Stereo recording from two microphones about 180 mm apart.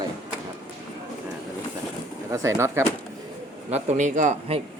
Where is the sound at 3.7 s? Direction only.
40° right (ahead or behind).